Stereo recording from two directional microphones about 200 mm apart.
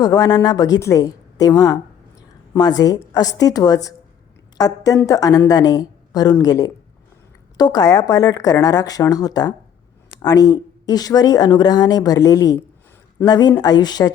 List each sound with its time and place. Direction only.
0.0 s a woman's voice: 20° left (ahead or behind)